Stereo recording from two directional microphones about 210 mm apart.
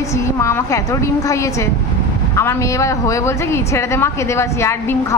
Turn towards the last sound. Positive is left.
turn(degrees=15)  # may be behind; listen again after turning